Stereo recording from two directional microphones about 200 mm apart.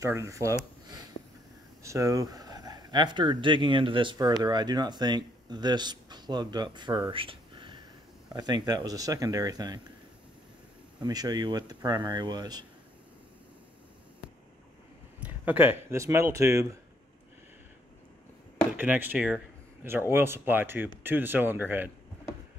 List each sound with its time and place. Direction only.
0.0 s speech: 15° right (ahead or behind)
0.8 s a sound: 20° right (ahead or behind)
1.8 s speech: 15° right (ahead or behind)
11.0 s speech: 20° right (ahead or behind)
15.1 s speech: 10° right (ahead or behind)
18.8 s speech: 10° right (ahead or behind)